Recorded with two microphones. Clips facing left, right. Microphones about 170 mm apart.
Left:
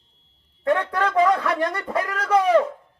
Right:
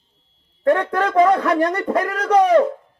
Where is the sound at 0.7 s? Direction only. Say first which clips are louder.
Right 4 dB; 40° right (ahead or behind).